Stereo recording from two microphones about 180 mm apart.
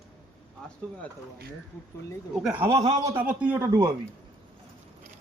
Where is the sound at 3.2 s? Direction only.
10° right (ahead or behind).